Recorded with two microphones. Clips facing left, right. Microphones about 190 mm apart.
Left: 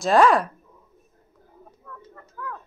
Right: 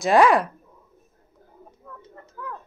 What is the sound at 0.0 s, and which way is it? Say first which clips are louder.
Speech: even; 15° right (ahead or behind).